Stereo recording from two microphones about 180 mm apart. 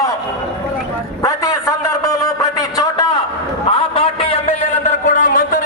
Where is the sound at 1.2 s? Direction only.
15° left (ahead or behind).